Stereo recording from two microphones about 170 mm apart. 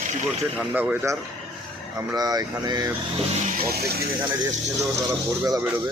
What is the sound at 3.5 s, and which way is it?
Speech, 65° right (ahead or behind).